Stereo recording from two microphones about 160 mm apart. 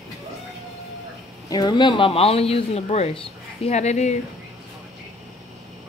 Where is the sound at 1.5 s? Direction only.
25° left (ahead or behind); by 4.2 s 45° left (ahead or behind).